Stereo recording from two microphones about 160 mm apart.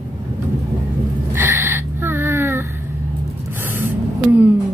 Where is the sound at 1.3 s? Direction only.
15° right (ahead or behind).